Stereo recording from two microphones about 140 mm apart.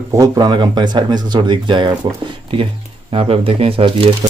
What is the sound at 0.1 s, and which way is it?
Speech, 25° right (ahead or behind).